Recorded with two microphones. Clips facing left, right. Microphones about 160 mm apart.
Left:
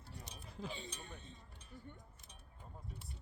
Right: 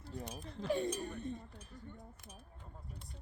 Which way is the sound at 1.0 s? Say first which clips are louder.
Right 13 dB; 55° right (ahead or behind).